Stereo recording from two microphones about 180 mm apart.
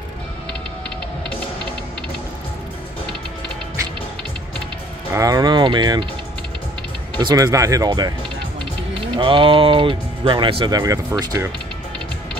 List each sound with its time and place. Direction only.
5.1 s speech: 20° right (ahead or behind)
7.2 s speech: 25° right (ahead or behind)
9.1 s speech: 30° right (ahead or behind)